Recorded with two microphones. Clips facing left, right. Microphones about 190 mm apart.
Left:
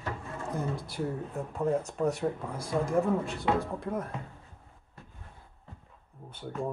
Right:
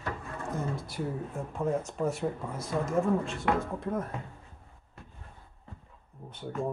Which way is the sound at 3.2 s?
15° left (ahead or behind).